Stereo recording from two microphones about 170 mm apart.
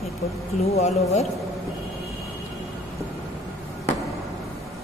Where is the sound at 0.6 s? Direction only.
40° left (ahead or behind).